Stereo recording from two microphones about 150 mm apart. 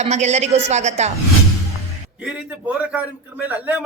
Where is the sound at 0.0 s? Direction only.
50° right (ahead or behind).